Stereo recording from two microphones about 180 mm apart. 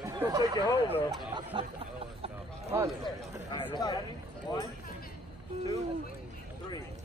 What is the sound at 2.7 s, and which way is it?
Speech, 15° right (ahead or behind).